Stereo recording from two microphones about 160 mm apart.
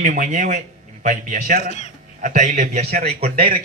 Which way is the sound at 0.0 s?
55° right (ahead or behind).